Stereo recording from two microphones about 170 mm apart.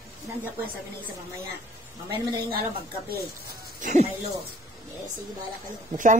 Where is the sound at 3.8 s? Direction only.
50° right (ahead or behind).